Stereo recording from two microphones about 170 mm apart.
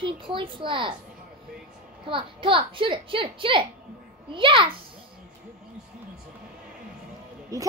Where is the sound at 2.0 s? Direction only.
30° right (ahead or behind).